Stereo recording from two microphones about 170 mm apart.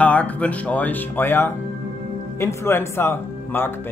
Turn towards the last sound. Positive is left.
turn(degrees=15)  # may be behind; listen again after turning